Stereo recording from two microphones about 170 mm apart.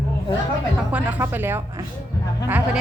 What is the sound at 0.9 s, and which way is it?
Speech, 10° right (ahead or behind).